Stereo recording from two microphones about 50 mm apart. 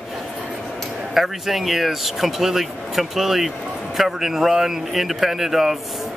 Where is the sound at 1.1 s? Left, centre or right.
Centre.